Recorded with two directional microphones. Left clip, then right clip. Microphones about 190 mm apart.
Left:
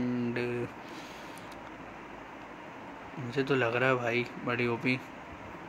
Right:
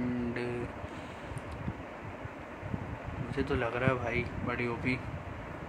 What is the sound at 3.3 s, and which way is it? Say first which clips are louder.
Speech: left 4 dB; 25° left (ahead or behind).